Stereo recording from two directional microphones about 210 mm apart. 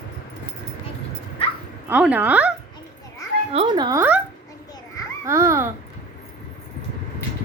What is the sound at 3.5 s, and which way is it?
Speech, 25° right (ahead or behind).